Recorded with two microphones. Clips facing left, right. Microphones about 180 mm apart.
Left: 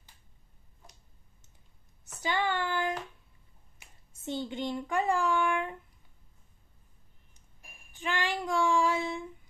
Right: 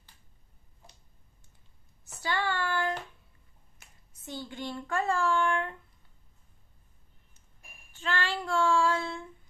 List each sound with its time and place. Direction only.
2.1 s a sound: 20° left (ahead or behind)
4.1 s a child's voice: 25° left (ahead or behind)
7.9 s child singing: 15° left (ahead or behind)